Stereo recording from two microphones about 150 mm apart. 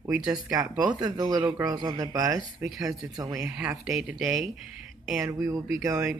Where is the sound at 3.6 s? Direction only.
5° right (ahead or behind).